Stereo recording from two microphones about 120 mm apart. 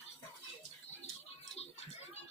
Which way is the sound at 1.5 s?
60° left (ahead or behind).